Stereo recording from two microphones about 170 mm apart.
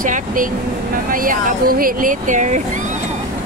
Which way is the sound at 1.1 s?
55° right (ahead or behind).